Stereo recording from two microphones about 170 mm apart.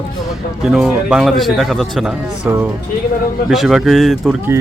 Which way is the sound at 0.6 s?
5° right (ahead or behind).